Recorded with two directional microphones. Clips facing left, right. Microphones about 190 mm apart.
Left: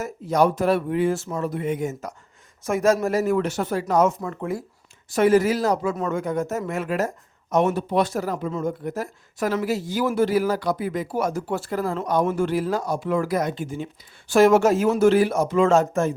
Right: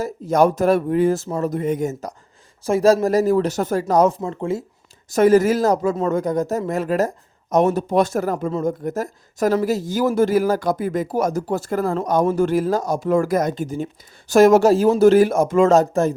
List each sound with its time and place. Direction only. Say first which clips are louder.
0.3 s speech: right 3 dB; 45° right (ahead or behind); by 4.6 s 25° right (ahead or behind)
5.0 s speech: right 4 dB; 40° right (ahead or behind)